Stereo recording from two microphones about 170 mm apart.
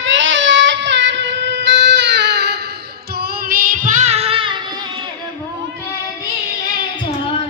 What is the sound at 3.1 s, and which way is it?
Child singing, 65° right (ahead or behind).